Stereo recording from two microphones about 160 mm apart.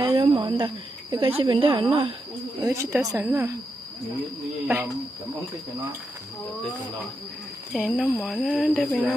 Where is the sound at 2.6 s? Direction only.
20° right (ahead or behind).